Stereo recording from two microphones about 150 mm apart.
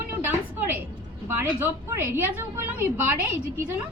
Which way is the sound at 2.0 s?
15° right (ahead or behind).